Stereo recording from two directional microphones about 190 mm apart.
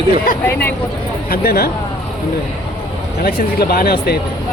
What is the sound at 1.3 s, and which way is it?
Speech, 50° left (ahead or behind).